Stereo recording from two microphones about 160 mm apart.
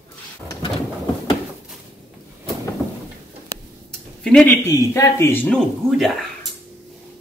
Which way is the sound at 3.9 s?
5° left (ahead or behind).